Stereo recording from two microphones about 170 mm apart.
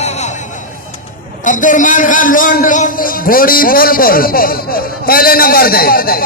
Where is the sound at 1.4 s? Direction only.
50° left (ahead or behind).